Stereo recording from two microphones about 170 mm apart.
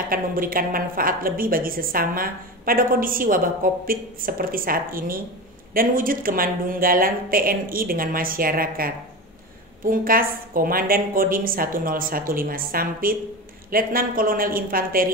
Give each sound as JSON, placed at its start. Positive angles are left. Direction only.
{"t": 0.1, "sound": "a woman's voice", "side_deg": -55}